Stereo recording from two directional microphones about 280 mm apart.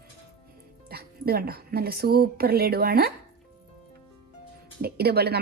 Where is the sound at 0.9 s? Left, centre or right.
Right.